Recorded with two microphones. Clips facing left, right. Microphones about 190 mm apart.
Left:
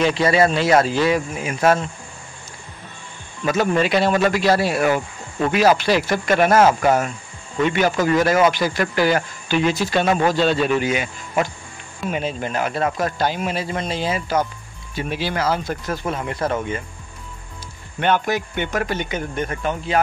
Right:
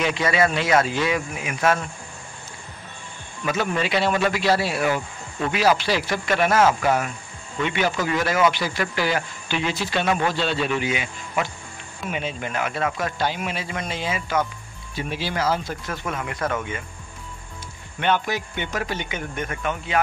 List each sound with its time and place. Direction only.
0.0 s speech: 35° left (ahead or behind)
3.4 s speech: 45° left (ahead or behind)
15.0 s speech: 60° left (ahead or behind)
15.9 s speech: 30° left (ahead or behind)
18.0 s speech: 50° left (ahead or behind); by 20.0 s 35° left (ahead or behind)